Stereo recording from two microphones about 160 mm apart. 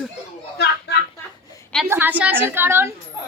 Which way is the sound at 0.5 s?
90° left.